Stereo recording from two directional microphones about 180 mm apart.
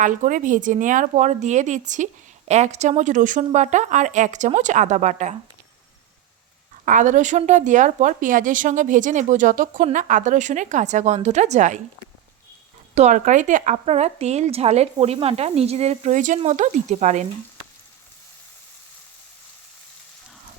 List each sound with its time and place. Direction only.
0.0 s a woman's voice: 45° right (ahead or behind)
6.8 s a woman's voice: 45° right (ahead or behind)
12.9 s speech: 40° right (ahead or behind)